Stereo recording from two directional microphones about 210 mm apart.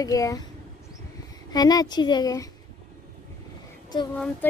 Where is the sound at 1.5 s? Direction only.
20° left (ahead or behind).